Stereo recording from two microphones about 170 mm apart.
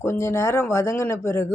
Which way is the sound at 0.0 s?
15° left (ahead or behind).